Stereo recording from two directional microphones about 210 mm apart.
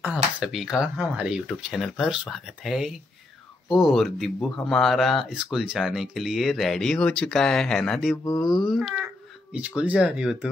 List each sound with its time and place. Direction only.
0.0 s speech: 5° right (ahead or behind)
8.2 s speech: 15° left (ahead or behind)
8.5 s speech: centre (ahead or behind)